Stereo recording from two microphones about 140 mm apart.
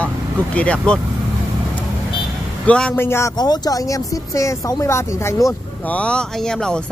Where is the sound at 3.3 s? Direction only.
30° left (ahead or behind); by 6.8 s 5° left (ahead or behind).